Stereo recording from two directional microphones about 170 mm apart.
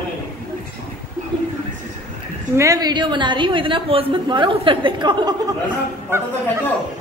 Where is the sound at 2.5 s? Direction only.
20° right (ahead or behind).